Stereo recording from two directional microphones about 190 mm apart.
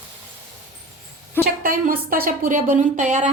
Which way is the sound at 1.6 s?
50° right (ahead or behind).